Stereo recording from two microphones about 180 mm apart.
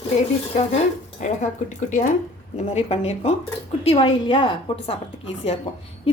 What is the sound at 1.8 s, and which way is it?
A woman's voice, 45° left (ahead or behind).